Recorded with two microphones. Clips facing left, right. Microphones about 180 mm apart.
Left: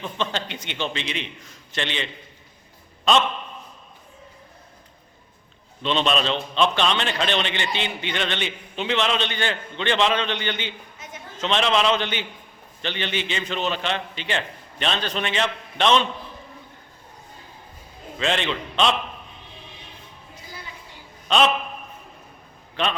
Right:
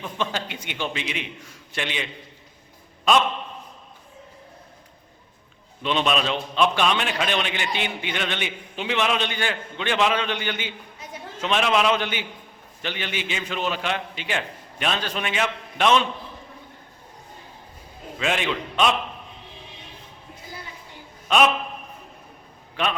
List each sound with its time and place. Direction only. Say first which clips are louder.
0.0 s a man's voice: even; 5° right (ahead or behind)
5.8 s a man's voice: left 1 dB; 10° right (ahead or behind)
18.2 s a man's voice: left 1 dB; 10° right (ahead or behind)
21.2 s a man's voice: even; 10° right (ahead or behind)